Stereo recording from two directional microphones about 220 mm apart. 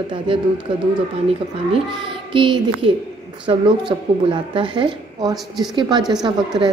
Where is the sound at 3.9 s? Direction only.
20° right (ahead or behind).